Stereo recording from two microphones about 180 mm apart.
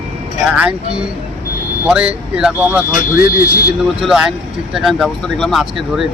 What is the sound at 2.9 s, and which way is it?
Speech, 50° left (ahead or behind).